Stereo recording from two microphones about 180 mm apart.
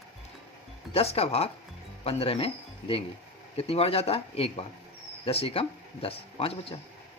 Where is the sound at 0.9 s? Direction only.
35° left (ahead or behind).